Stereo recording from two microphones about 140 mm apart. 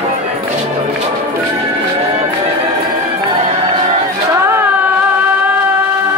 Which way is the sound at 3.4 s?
45° right (ahead or behind).